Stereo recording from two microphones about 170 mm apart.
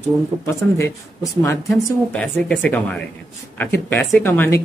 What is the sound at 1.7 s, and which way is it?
Speech, 5° left (ahead or behind).